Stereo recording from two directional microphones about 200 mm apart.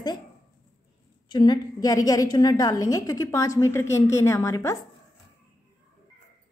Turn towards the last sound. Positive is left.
turn(degrees=15)  # may be behind; listen again after turning